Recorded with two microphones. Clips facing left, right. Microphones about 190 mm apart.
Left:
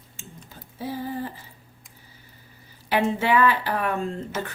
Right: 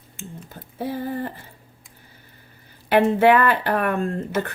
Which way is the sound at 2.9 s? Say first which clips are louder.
Right 6 dB; 55° right (ahead or behind).